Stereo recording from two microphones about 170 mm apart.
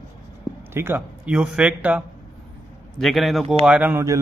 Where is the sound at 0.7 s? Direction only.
10° right (ahead or behind).